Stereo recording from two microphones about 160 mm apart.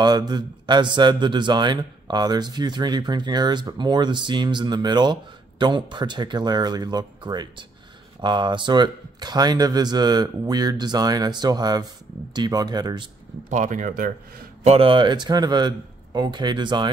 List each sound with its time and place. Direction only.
0.0 s speech: 25° right (ahead or behind)
13.5 s speech: 50° right (ahead or behind)
14.6 s speech: 35° right (ahead or behind)